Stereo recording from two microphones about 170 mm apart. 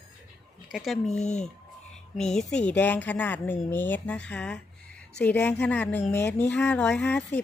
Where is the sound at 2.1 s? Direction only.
5° left (ahead or behind).